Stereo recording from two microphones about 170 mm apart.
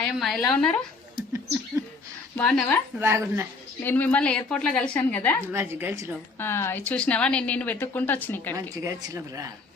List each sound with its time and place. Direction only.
0.0 s a woman's voice: centre (ahead or behind)
2.4 s a woman's voice: 10° left (ahead or behind)
3.0 s a woman's voice: 15° right (ahead or behind)
3.8 s a woman's voice: 10° left (ahead or behind)
5.5 s a woman's voice: 15° right (ahead or behind)
6.4 s a woman's voice: 15° left (ahead or behind)
8.7 s speech: 20° right (ahead or behind)